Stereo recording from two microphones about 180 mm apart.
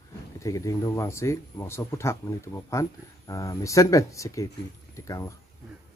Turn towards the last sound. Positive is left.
turn(degrees=20)  # may be behind; listen again after turning